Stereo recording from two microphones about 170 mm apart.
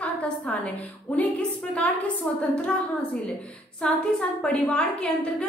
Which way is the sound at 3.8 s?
5° left (ahead or behind).